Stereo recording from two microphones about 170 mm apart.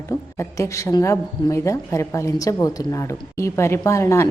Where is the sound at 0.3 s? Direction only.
15° left (ahead or behind).